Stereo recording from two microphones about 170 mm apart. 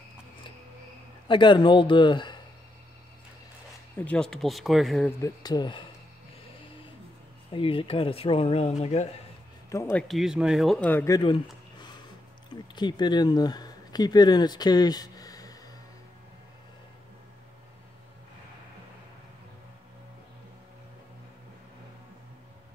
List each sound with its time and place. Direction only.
1.3 s a man's voice: 30° left (ahead or behind)
4.0 s speech: 5° left (ahead or behind)
5.2 s a man's voice: 25° left (ahead or behind)
7.5 s speech: 30° left (ahead or behind)
9.7 s speech: 15° left (ahead or behind)
10.0 s speech: centre (ahead or behind)
12.4 s speech: 25° left (ahead or behind)